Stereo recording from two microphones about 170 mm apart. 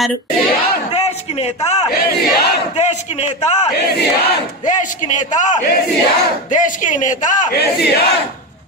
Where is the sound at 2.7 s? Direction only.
40° left (ahead or behind).